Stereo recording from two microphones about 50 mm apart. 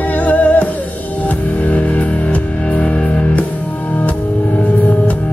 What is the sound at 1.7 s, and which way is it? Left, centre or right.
Music, left.